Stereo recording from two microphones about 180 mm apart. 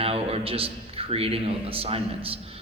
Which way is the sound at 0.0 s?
30° right (ahead or behind).